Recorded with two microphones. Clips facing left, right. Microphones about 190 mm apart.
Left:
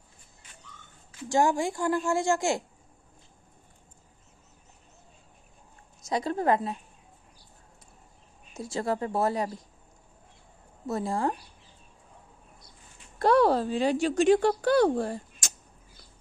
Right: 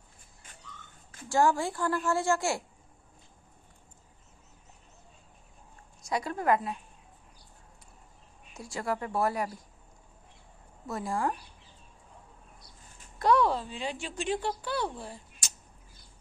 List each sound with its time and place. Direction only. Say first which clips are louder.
1.3 s a woman's voice: left 1 dB; 15° left (ahead or behind)
6.0 s speech: left 2 dB; 25° left (ahead or behind)
8.5 s speech: left 4 dB; 25° left (ahead or behind)
10.9 s speech: left 3 dB; 25° left (ahead or behind)
13.2 s a woman's voice: left 4 dB; 35° left (ahead or behind)